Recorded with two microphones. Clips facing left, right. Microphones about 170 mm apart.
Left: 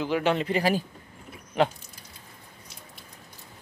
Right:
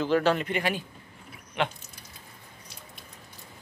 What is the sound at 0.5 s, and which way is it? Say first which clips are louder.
Speech: left 4 dB; 35° left (ahead or behind).